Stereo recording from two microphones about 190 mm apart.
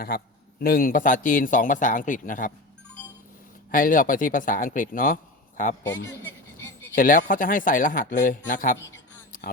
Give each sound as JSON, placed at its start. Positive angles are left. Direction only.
{"t": 0.6, "sound": "a man's voice", "side_deg": 50}
{"t": 3.7, "sound": "a man's voice", "side_deg": 45}
{"t": 6.9, "sound": "a man's voice", "side_deg": 45}